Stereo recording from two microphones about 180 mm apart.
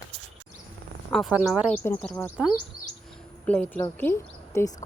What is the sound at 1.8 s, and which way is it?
Speech, 10° left (ahead or behind).